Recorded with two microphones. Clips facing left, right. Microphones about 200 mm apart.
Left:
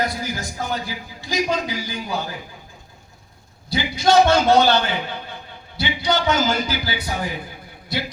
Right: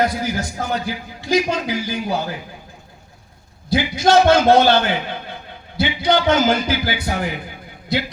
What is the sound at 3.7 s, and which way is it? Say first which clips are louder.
A man's voice: right 2 dB; 50° right (ahead or behind).